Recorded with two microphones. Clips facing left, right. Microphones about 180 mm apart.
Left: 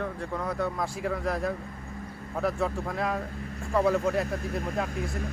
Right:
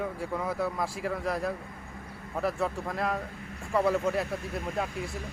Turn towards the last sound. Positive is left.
turn(degrees=0)  # may be behind; listen again after turning